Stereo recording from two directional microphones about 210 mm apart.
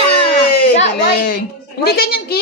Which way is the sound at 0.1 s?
50° left (ahead or behind).